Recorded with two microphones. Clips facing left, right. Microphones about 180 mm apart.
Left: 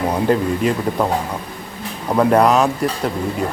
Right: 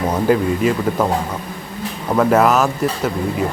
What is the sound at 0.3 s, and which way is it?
Speech, centre (ahead or behind).